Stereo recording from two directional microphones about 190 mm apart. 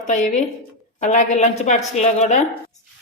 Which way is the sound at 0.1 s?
40° left (ahead or behind).